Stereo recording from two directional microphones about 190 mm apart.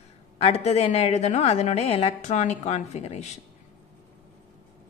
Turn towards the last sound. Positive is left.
turn(degrees=35)  # may be behind; listen again after turning